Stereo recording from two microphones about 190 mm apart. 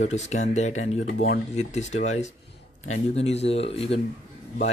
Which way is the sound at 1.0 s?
65° left (ahead or behind).